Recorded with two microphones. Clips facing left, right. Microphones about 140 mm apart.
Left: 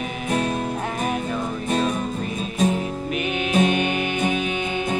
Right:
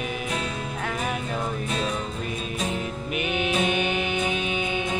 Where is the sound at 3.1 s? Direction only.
35° left (ahead or behind).